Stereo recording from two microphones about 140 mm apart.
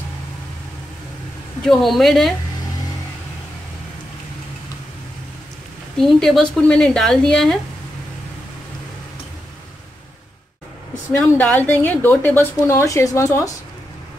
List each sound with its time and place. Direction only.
1.6 s speech: centre (ahead or behind)
5.9 s speech: 5° left (ahead or behind)
11.1 s a woman's voice: 20° left (ahead or behind)